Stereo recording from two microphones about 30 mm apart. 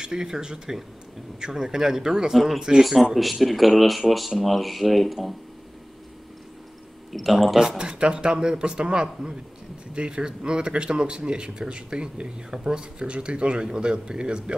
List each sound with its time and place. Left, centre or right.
0.0 s speech: right
2.3 s speech: centre
7.1 s speech: centre
7.5 s speech: right
13.0 s speech: right